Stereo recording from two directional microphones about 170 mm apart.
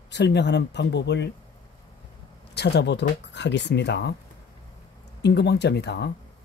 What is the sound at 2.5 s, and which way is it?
Speech, 80° left.